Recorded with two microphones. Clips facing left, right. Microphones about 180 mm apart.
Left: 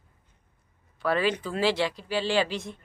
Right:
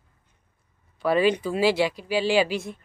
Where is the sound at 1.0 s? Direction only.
15° right (ahead or behind).